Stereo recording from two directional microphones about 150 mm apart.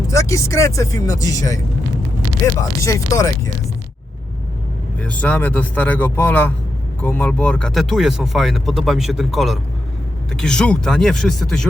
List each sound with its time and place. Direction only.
0.1 s speech: 20° left (ahead or behind)
4.9 s speech: 10° left (ahead or behind)